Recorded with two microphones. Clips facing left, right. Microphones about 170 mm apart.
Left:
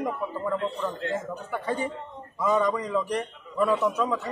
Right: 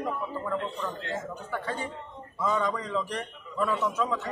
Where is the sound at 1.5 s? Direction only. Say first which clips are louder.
Left 5 dB; 15° left (ahead or behind).